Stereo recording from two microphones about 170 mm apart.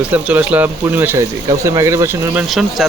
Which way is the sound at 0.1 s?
10° right (ahead or behind).